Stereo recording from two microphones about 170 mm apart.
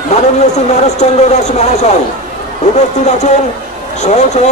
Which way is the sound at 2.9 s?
45° left (ahead or behind).